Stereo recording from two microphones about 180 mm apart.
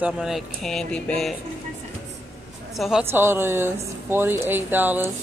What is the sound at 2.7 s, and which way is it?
Speech, centre (ahead or behind).